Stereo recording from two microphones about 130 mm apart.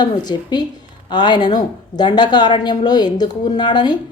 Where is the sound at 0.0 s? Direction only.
35° left (ahead or behind).